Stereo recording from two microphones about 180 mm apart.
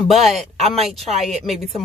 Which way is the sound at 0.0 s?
Centre (ahead or behind).